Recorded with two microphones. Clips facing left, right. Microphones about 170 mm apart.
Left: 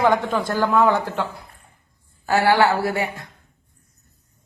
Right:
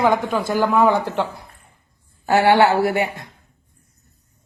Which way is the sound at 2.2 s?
20° right (ahead or behind).